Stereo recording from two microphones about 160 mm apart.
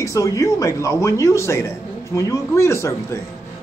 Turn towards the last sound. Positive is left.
turn(degrees=15)  # may be behind; listen again after turning